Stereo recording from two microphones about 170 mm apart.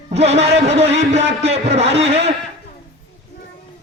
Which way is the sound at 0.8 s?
90° right.